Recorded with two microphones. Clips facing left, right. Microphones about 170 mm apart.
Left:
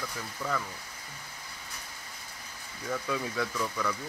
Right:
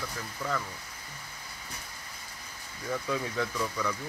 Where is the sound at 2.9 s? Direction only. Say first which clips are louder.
Right 1 dB; centre (ahead or behind).